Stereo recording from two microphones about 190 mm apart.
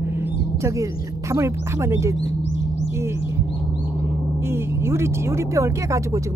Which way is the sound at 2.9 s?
15° right (ahead or behind).